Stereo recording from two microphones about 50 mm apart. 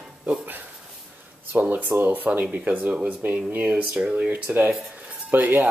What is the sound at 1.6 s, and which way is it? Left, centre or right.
Speech, right.